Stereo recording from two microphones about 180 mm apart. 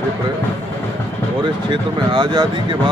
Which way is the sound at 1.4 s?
25° right (ahead or behind).